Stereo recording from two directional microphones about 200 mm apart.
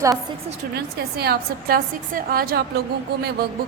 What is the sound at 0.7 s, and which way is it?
A woman's voice, 50° right (ahead or behind).